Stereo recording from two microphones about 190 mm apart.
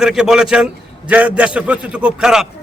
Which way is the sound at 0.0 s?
5° right (ahead or behind).